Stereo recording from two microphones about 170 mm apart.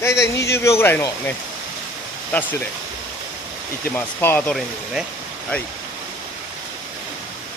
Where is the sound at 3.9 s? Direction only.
10° left (ahead or behind).